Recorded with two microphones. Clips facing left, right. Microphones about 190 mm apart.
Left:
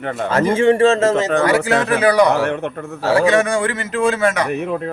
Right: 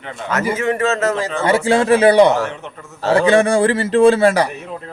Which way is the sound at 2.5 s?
60° left (ahead or behind).